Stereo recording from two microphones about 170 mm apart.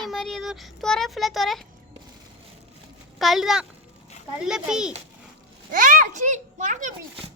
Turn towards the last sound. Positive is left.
turn(degrees=-50)  # may be behind; listen again after turning